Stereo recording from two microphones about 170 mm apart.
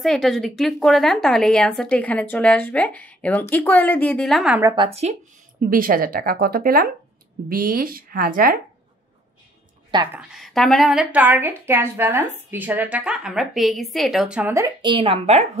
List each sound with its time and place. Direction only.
0.0 s speech: centre (ahead or behind)
4.7 s a woman's voice: 35° right (ahead or behind)
5.7 s speech: 55° right (ahead or behind)
10.1 s a woman's voice: centre (ahead or behind)
14.8 s a woman's voice: 30° right (ahead or behind)